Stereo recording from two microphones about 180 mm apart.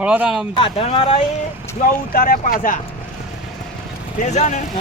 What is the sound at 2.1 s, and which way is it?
Speech, 50° left (ahead or behind).